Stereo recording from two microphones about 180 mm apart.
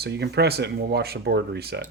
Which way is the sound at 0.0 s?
65° right (ahead or behind).